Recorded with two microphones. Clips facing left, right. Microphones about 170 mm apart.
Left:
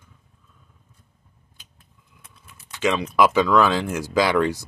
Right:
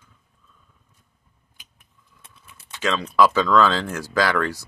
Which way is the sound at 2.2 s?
30° right (ahead or behind).